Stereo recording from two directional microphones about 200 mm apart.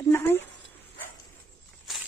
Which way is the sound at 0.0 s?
10° left (ahead or behind).